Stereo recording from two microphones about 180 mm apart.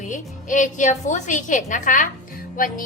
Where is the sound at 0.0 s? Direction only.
45° left (ahead or behind).